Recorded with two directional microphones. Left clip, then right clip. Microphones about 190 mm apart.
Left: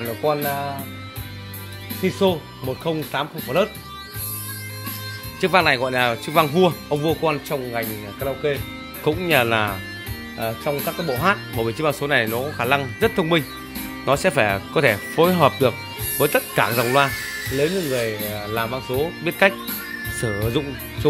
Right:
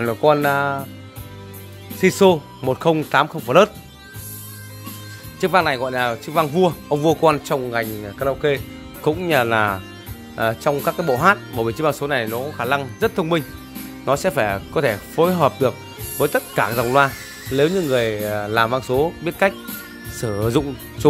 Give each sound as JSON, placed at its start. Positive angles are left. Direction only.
{"t": 0.0, "sound": "speech", "side_deg": -40}
{"t": 2.0, "sound": "speech", "side_deg": -40}
{"t": 5.4, "sound": "speech", "side_deg": -5}
{"t": 7.0, "sound": "speech", "side_deg": -25}
{"t": 9.0, "sound": "speech", "side_deg": -10}
{"t": 10.3, "sound": "speech", "side_deg": -25}
{"t": 11.2, "sound": "speech", "side_deg": -10}
{"t": 17.6, "sound": "speech", "side_deg": -20}
{"t": 19.2, "sound": "speech", "side_deg": -5}
{"t": 20.4, "sound": "speech", "side_deg": -25}